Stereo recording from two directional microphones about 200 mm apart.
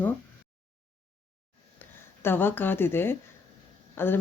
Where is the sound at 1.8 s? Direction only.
10° left (ahead or behind).